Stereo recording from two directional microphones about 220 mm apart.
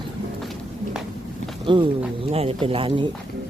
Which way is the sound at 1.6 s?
20° right (ahead or behind).